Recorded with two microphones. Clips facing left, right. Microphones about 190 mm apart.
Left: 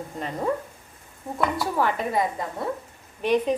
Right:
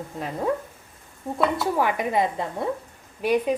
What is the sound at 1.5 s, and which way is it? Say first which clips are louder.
Speech: right 1 dB; 15° right (ahead or behind).